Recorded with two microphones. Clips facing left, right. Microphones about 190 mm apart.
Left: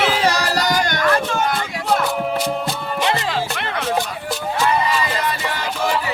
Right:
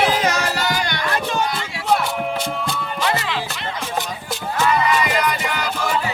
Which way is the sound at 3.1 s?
40° left (ahead or behind).